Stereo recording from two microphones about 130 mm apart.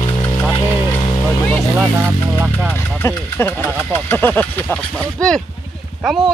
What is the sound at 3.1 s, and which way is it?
Speech, 15° left (ahead or behind).